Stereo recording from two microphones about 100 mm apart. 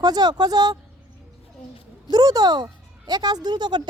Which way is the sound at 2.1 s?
40° right (ahead or behind).